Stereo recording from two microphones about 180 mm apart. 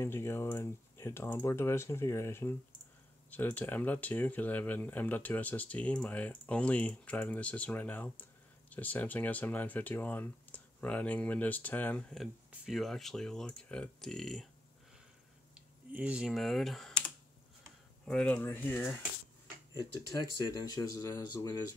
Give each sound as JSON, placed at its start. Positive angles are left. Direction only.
{"t": 0.0, "sound": "speech", "side_deg": 15}
{"t": 15.5, "sound": "computer keyboard", "side_deg": -10}
{"t": 18.0, "sound": "speech", "side_deg": 5}
{"t": 20.1, "sound": "speech", "side_deg": 20}